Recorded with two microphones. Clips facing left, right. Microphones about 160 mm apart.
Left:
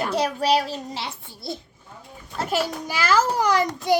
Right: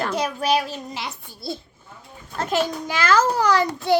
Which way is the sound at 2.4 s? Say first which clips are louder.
Right 2 dB; 10° left (ahead or behind).